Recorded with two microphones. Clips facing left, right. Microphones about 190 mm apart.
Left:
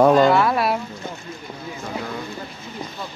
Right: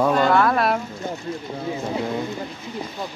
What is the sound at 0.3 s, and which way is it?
Speech, 5° left (ahead or behind).